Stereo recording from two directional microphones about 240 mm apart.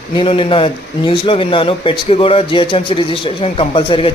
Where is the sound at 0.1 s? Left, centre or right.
Left.